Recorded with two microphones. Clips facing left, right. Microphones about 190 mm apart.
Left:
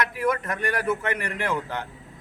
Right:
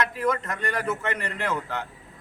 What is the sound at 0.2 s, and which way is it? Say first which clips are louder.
A man's voice: left 1 dB; 10° left (ahead or behind).